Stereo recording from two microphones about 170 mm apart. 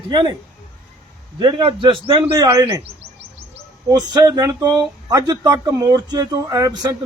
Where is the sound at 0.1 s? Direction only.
25° right (ahead or behind).